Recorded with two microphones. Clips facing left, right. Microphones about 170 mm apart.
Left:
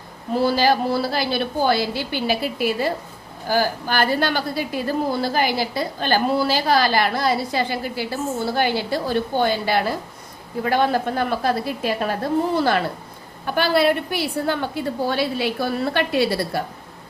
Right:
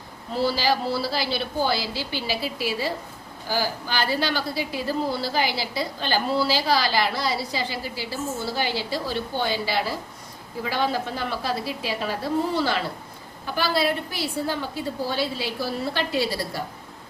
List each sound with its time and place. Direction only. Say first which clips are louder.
0.3 s a woman's voice: left 5 dB; 50° left (ahead or behind)